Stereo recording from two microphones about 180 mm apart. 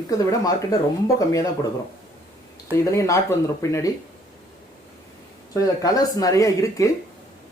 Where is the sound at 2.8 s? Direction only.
15° left (ahead or behind).